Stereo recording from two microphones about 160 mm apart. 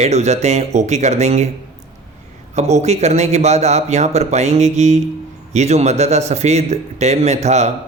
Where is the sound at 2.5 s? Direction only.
45° right (ahead or behind).